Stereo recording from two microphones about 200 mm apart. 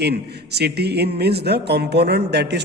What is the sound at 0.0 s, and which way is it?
A man's voice, 55° right (ahead or behind).